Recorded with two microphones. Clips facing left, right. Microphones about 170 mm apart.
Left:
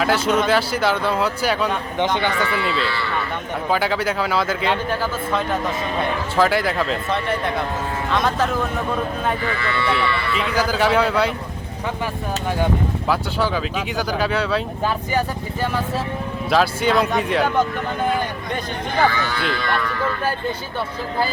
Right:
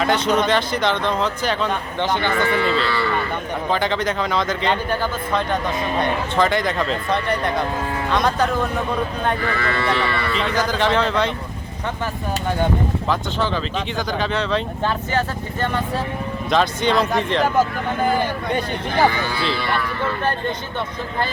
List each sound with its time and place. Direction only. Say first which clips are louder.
0.0 s speech: even; 5° left (ahead or behind)
2.5 s speech: right 3 dB; 40° right (ahead or behind)
3.7 s speech: left 1 dB; 5° left (ahead or behind)
9.6 s speech: right 1 dB; 40° right (ahead or behind)
10.3 s speech: left 1 dB; 5° left (ahead or behind)
13.1 s speech: left 3 dB; 10° left (ahead or behind)
16.5 s speech: left 1 dB; 5° left (ahead or behind)
19.0 s speech: right 1 dB; 15° right (ahead or behind)